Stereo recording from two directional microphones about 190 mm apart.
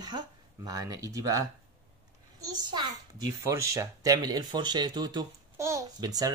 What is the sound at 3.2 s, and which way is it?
Speech, 15° right (ahead or behind).